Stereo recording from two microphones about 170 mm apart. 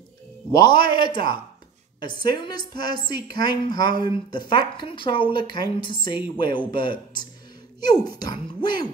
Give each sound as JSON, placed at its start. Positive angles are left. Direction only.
{"t": 0.5, "sound": "a woman's voice", "side_deg": 25}